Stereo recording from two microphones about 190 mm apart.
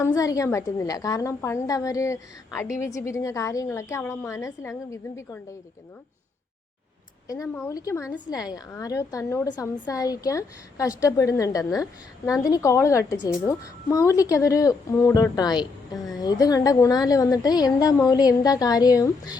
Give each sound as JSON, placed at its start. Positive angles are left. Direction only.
{"t": 0.0, "sound": "a woman's voice", "side_deg": 15}
{"t": 7.3, "sound": "a woman's voice", "side_deg": 15}